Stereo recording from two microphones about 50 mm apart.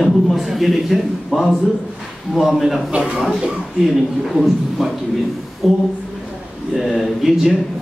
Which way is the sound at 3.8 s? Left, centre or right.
Centre.